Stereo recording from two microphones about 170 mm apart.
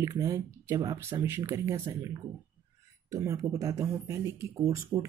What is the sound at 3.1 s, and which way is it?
Speech, 15° right (ahead or behind).